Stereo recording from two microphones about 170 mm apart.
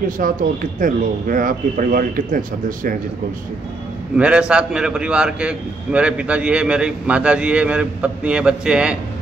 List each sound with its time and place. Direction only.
0.2 s speech: 50° right (ahead or behind)
4.2 s a man's voice: 5° right (ahead or behind)